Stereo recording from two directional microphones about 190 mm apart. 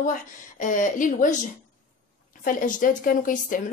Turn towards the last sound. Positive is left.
turn(degrees=45)  # may be behind; listen again after turning